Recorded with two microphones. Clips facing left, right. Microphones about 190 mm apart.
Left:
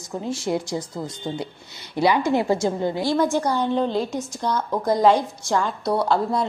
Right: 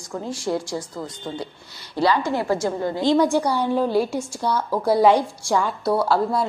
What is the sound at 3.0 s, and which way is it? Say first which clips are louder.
A woman's voice: right 4 dB; 15° right (ahead or behind).